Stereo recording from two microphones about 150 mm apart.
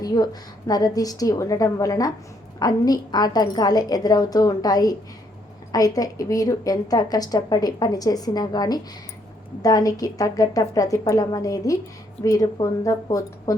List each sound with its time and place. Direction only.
0.0 s a woman's voice: 25° left (ahead or behind)